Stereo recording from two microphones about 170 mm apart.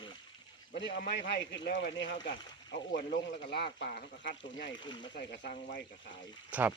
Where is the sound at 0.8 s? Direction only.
90° left.